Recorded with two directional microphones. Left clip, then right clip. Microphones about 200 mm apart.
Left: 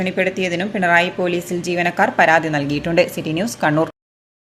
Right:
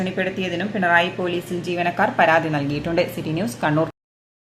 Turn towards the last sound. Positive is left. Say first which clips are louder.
# left 3 dB
turn(degrees=30)  # may be behind; listen again after turning